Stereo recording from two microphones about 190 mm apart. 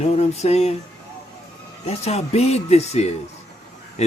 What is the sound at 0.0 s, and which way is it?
Speech, 35° left (ahead or behind).